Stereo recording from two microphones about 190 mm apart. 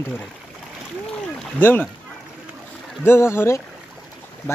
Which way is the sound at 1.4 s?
10° left (ahead or behind).